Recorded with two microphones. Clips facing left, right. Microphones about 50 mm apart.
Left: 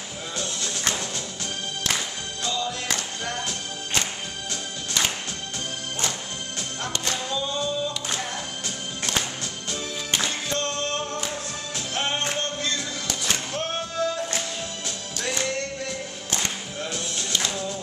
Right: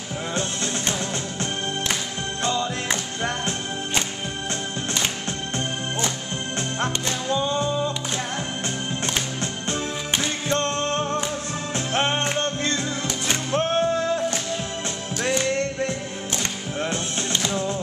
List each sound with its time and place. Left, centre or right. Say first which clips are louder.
0.3 s music: right 4 dB; right
2.4 s music: right 3 dB; right
6.8 s music: right 1 dB; right
10.5 s music: right 8 dB; right
16.8 s music: right 5 dB; right